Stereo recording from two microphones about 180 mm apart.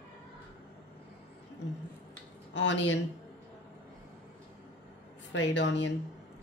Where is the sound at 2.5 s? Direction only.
90° left.